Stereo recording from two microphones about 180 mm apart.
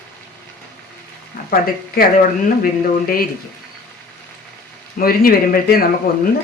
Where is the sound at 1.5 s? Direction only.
55° left (ahead or behind).